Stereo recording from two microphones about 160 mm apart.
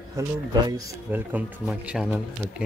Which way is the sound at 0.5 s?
25° right (ahead or behind).